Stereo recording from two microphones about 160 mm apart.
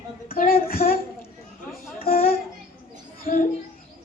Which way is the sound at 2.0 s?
70° left (ahead or behind).